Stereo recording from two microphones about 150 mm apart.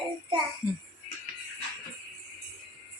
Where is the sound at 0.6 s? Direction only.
30° left (ahead or behind).